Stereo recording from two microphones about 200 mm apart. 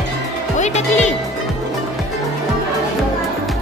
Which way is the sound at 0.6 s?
35° left (ahead or behind).